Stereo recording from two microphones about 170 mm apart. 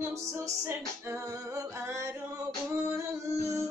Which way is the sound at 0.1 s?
15° right (ahead or behind).